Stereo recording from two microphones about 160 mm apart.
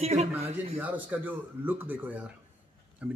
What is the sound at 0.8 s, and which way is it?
Speech, 10° right (ahead or behind).